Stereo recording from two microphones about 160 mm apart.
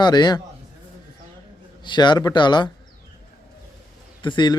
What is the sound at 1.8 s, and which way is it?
Speech, 30° left (ahead or behind).